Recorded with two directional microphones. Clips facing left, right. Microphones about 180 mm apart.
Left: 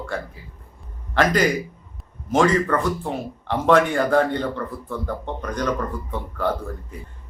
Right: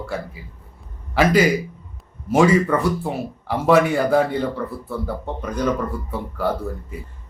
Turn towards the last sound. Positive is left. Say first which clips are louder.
# right 1 dB
turn(degrees=-10)  # may be behind; listen again after turning